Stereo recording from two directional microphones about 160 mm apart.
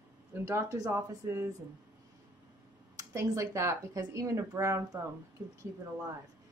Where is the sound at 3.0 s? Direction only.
20° right (ahead or behind).